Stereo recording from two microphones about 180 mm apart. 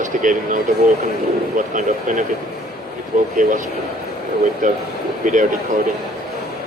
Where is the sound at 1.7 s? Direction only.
45° right (ahead or behind).